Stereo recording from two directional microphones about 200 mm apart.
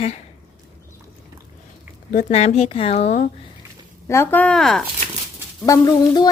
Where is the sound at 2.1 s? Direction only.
40° left (ahead or behind).